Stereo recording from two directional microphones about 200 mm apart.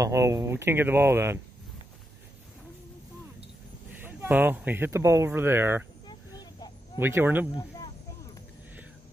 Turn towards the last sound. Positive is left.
turn(degrees=-10)  # may be behind; listen again after turning